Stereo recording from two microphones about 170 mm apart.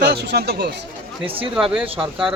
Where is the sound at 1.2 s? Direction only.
30° right (ahead or behind).